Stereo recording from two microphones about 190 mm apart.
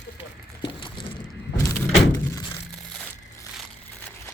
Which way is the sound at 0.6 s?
25° left (ahead or behind).